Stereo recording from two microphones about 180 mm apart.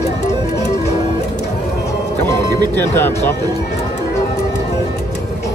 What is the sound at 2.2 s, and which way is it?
Music, 15° left (ahead or behind).